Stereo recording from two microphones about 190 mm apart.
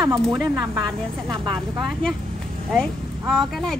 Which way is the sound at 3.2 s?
Centre (ahead or behind).